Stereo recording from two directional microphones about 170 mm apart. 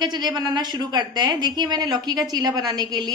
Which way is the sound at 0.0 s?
25° right (ahead or behind).